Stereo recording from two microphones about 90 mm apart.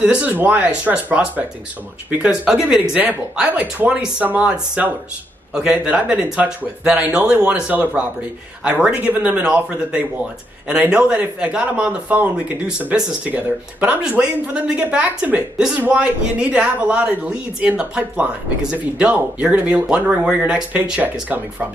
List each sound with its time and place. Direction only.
0.0 s speech: 15° right (ahead or behind)
3.0 s speech: 20° right (ahead or behind)